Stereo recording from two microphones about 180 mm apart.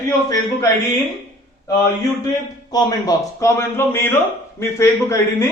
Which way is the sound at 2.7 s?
20° left (ahead or behind).